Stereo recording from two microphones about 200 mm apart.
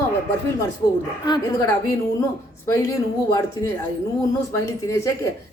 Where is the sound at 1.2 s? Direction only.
15° left (ahead or behind).